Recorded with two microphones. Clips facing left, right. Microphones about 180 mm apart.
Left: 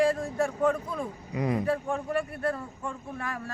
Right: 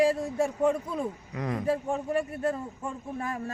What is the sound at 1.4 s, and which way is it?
Speech, 10° left (ahead or behind).